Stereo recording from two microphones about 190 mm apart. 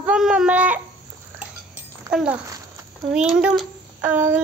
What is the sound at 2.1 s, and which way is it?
Child singing, 5° right (ahead or behind).